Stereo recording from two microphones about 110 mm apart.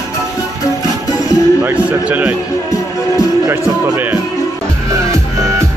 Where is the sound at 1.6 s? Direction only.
15° right (ahead or behind).